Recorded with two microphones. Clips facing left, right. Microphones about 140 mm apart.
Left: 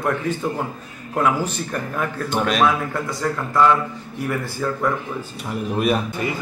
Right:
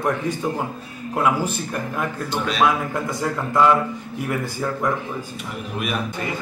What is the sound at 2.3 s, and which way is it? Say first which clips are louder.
Speech: left 6 dB; 50° left (ahead or behind).